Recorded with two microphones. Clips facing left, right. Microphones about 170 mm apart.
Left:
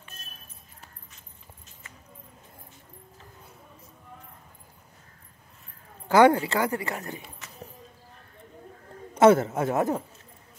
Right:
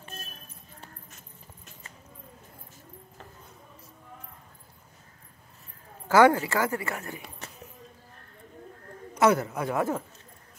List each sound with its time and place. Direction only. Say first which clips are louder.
6.0 s a woman's voice: left 1 dB; 20° left (ahead or behind)
7.2 s a sound: right 1 dB; 35° right (ahead or behind)
9.1 s a man's voice: left 5 dB; 25° left (ahead or behind)